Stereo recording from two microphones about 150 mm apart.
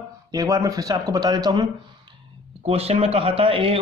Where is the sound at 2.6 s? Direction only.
40° right (ahead or behind).